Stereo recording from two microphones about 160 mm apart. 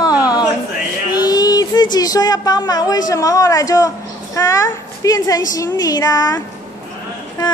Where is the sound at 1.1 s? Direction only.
25° left (ahead or behind).